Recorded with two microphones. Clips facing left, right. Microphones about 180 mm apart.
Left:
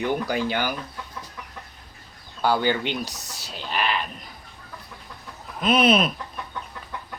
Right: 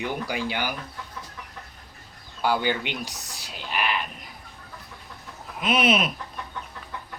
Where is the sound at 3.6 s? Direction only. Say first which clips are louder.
Left 2 dB; 10° right (ahead or behind).